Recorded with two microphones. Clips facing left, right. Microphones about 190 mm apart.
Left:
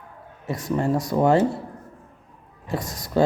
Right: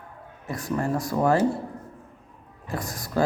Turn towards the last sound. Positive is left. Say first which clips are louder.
# left 4 dB
turn(degrees=20)  # may be behind; listen again after turning